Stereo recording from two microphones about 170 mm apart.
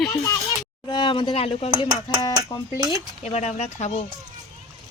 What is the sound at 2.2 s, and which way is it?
Speech, 20° left (ahead or behind).